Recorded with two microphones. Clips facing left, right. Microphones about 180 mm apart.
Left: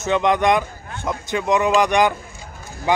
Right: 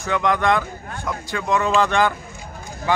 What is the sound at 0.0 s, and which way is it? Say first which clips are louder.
A man's voice: left 3 dB; 20° left (ahead or behind).